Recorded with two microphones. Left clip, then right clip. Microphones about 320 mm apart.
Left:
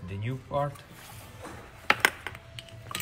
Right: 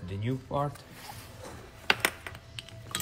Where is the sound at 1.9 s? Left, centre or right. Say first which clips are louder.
Left 3 dB; centre.